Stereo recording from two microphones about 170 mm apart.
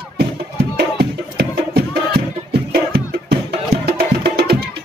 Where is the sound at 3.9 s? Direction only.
75° right (ahead or behind).